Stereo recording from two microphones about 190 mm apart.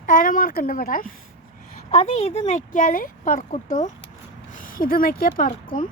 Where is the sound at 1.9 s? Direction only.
35° left (ahead or behind).